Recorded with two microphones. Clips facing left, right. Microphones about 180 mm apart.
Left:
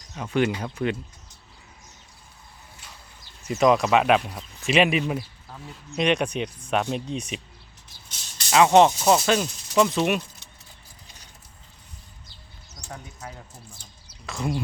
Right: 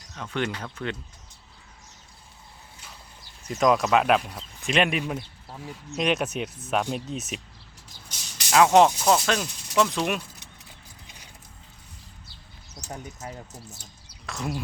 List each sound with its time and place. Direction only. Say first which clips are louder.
0.1 s speech: left 6 dB; 10° left (ahead or behind)
3.4 s speech: left 2 dB; centre (ahead or behind)
8.4 s speech: left 1 dB; centre (ahead or behind)
12.9 s speech: right 2 dB; 20° right (ahead or behind)
14.3 s speech: left 3 dB; centre (ahead or behind)